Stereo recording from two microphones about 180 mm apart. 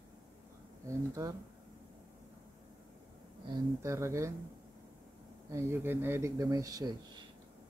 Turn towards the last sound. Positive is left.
turn(degrees=-20)  # may be behind; listen again after turning